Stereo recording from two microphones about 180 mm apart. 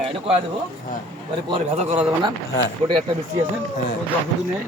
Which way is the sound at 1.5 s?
35° right (ahead or behind).